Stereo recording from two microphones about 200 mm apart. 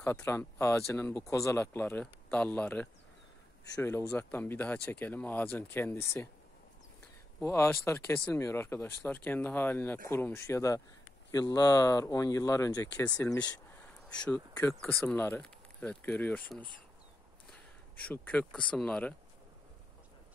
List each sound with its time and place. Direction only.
0.0 s speech: 10° left (ahead or behind)
7.4 s speech: 10° left (ahead or behind)
18.0 s speech: 5° left (ahead or behind)